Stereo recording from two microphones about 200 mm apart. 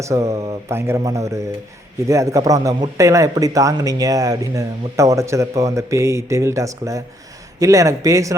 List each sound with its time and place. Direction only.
0.0 s a man's voice: 15° right (ahead or behind)